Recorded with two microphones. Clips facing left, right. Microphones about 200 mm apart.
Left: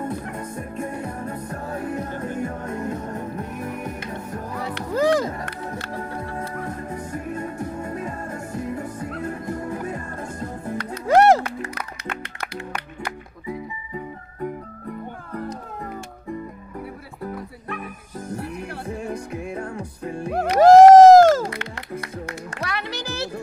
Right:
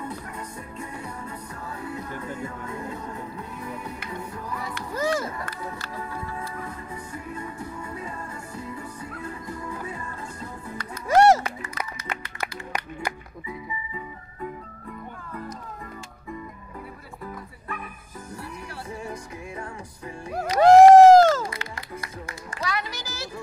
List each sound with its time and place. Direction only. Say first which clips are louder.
0.0 s music: left 6 dB; 50° left (ahead or behind)
13.5 s music: left 5 dB; 55° left (ahead or behind)
18.3 s music: left 7 dB; 60° left (ahead or behind)
20.6 s a sound: left 3 dB; 45° left (ahead or behind)
21.5 s music: left 4 dB; 65° left (ahead or behind)